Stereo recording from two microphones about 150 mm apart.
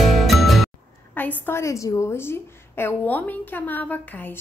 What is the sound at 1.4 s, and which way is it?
A woman's voice, 20° left (ahead or behind).